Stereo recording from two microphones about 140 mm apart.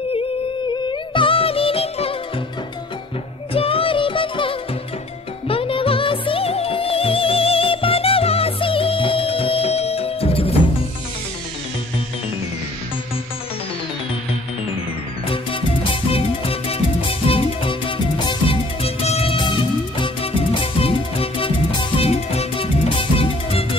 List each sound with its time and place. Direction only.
1.1 s music: 40° left (ahead or behind)
3.5 s music: 40° left (ahead or behind)
15.2 s music: 40° left (ahead or behind)